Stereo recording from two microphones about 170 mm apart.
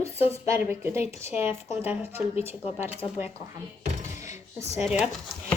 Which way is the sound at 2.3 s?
40° left (ahead or behind).